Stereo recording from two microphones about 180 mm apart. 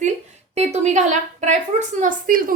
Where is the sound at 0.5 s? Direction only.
40° right (ahead or behind).